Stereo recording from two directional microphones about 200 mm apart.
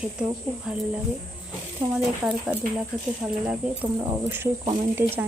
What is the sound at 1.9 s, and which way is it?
Speech, 5° right (ahead or behind).